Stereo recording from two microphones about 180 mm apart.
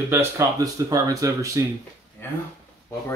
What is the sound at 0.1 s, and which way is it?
Speech, 15° right (ahead or behind).